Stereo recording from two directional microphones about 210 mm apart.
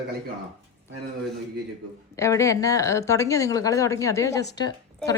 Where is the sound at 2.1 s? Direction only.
15° left (ahead or behind).